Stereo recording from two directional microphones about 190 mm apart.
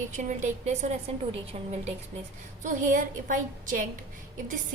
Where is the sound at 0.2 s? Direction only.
40° right (ahead or behind).